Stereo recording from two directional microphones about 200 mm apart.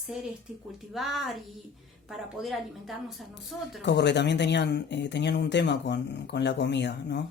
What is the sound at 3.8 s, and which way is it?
Speech, 60° left (ahead or behind).